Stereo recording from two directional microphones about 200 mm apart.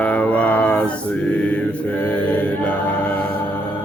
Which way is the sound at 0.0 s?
5° left (ahead or behind).